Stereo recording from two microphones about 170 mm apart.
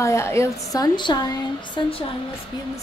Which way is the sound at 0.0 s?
15° left (ahead or behind).